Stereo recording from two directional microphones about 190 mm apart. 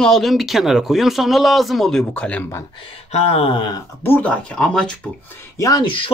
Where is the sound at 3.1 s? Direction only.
35° left (ahead or behind).